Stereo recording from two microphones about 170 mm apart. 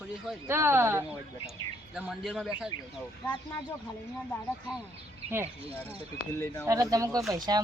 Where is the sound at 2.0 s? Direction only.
Centre (ahead or behind).